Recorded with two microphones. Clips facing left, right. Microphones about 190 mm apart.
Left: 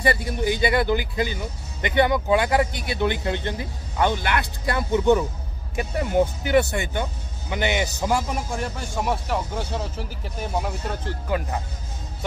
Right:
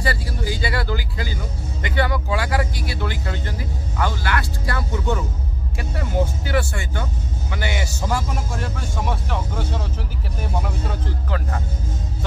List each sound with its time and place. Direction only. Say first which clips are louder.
0.0 s speech: left 3 dB; 20° left (ahead or behind)
11.2 s speech: left 3 dB; 15° left (ahead or behind)